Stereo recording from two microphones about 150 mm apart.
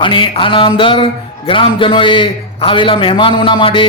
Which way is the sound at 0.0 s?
35° left (ahead or behind).